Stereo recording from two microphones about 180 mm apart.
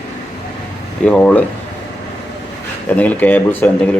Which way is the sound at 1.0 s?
10° left (ahead or behind).